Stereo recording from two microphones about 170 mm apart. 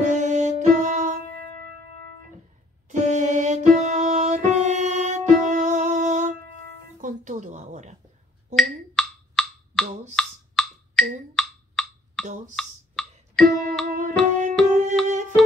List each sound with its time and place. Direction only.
0.0 s music: 45° right (ahead or behind)
2.9 s music: 45° right (ahead or behind)
7.0 s a sound: 45° right (ahead or behind)
8.5 s wood block: 5° left (ahead or behind)
12.5 s a sound: 5° left (ahead or behind)
13.8 s music: 50° right (ahead or behind)